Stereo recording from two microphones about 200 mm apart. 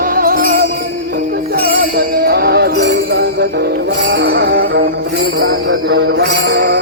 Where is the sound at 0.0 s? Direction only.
45° right (ahead or behind).